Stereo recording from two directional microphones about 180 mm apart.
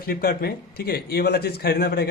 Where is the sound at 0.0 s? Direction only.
55° left (ahead or behind).